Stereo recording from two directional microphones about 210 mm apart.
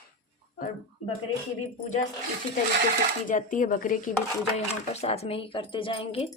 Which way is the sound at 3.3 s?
40° left (ahead or behind).